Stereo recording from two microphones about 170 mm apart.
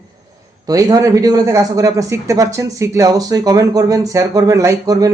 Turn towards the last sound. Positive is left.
turn(degrees=-20)  # may be behind; listen again after turning